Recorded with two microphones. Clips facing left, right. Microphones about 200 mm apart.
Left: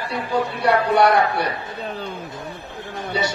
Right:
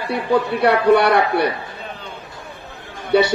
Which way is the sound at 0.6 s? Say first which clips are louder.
Right 2 dB; 60° right (ahead or behind).